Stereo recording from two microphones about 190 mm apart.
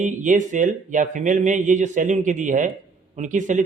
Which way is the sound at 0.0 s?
40° right (ahead or behind).